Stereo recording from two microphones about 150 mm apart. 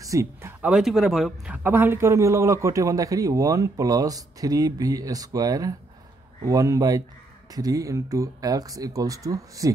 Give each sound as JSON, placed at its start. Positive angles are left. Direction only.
{"t": 0.0, "sound": "speech", "side_deg": -20}